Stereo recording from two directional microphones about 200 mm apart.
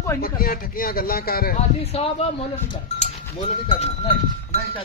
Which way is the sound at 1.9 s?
30° left (ahead or behind).